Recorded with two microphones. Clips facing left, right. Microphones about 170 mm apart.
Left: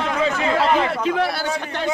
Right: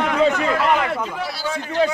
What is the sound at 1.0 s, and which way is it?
Speech, 70° left (ahead or behind).